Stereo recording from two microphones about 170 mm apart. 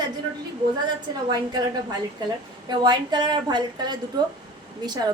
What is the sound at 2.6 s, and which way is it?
A woman's voice, 25° right (ahead or behind).